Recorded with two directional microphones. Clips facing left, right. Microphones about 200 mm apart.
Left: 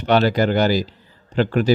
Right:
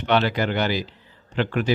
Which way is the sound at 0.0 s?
40° left (ahead or behind).